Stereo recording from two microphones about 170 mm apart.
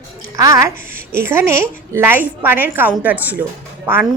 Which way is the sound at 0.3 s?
20° right (ahead or behind).